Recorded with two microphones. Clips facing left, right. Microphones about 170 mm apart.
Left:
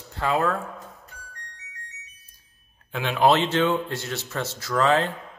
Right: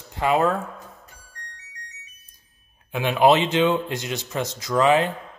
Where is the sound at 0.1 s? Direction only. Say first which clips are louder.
Right 3 dB; 15° right (ahead or behind).